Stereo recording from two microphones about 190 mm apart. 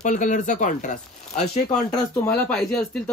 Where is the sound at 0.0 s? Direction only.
40° left (ahead or behind).